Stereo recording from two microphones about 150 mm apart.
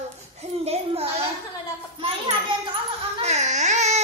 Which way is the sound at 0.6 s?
40° right (ahead or behind).